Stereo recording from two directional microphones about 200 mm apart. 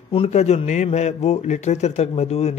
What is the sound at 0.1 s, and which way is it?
A man's voice, 30° left (ahead or behind).